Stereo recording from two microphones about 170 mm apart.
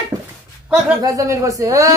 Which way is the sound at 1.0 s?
20° right (ahead or behind).